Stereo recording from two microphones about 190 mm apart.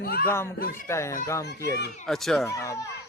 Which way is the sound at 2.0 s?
Centre (ahead or behind).